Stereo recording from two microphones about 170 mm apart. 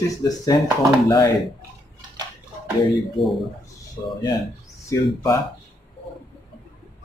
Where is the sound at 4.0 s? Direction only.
25° left (ahead or behind).